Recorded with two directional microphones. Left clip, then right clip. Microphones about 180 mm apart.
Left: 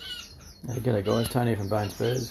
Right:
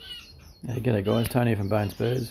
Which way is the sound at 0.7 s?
35° right (ahead or behind).